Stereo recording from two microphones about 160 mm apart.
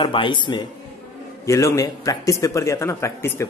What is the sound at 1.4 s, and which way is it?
A man's voice, 20° left (ahead or behind).